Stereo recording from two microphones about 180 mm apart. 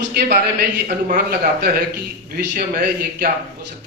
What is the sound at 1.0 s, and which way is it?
A man's voice, 55° right (ahead or behind).